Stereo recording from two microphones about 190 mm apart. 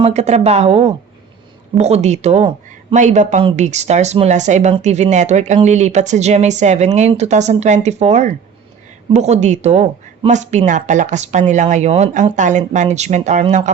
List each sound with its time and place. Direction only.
0.0 s speech: 35° right (ahead or behind)